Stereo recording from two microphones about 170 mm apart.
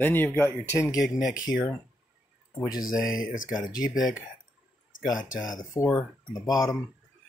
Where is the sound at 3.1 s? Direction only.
50° left (ahead or behind).